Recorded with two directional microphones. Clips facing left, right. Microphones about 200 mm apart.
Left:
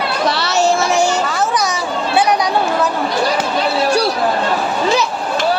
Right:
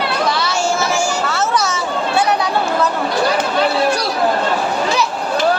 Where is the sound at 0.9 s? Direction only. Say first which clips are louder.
Left 3 dB; 15° left (ahead or behind).